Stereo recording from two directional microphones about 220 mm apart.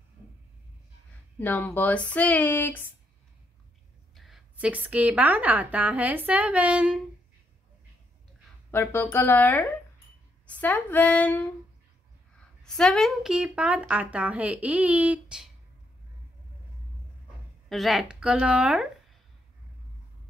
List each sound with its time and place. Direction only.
1.4 s speech: 10° left (ahead or behind)
4.1 s a woman's voice: centre (ahead or behind)
8.7 s a woman's voice: 10° left (ahead or behind)
17.6 s a woman's voice: centre (ahead or behind)